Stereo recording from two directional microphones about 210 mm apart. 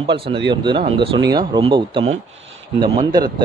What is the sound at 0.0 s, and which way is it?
Speech, 25° right (ahead or behind).